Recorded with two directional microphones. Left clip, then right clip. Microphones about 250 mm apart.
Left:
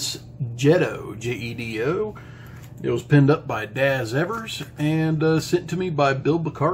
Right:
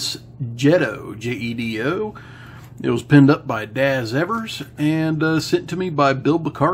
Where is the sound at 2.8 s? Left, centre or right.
Right.